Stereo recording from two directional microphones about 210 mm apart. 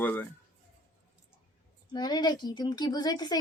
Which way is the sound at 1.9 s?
20° left (ahead or behind).